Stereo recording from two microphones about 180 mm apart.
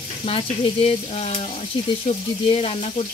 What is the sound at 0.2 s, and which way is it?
Speech, 35° left (ahead or behind).